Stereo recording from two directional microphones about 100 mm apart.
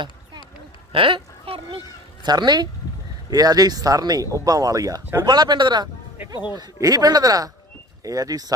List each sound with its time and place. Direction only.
0.9 s speech: 60° right (ahead or behind)
2.2 s speech: 45° right (ahead or behind)